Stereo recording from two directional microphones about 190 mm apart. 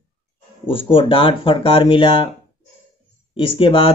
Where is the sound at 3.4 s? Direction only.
25° left (ahead or behind).